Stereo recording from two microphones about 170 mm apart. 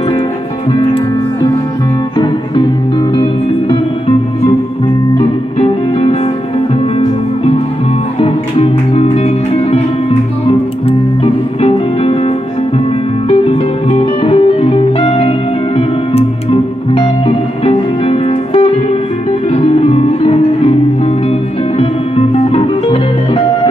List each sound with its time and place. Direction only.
2.1 s music: 25° left (ahead or behind)
5.1 s music: 35° left (ahead or behind)
8.2 s music: 35° left (ahead or behind)
10.9 s music: 35° left (ahead or behind)
13.3 s music: 35° left (ahead or behind)